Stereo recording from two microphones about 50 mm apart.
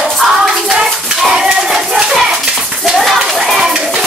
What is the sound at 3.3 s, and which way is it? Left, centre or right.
Hands, centre.